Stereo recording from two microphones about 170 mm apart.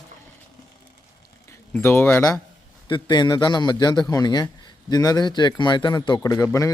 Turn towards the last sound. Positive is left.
turn(degrees=20)  # may be behind; listen again after turning